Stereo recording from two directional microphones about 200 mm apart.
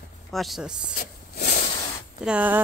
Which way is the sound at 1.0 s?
40° left (ahead or behind).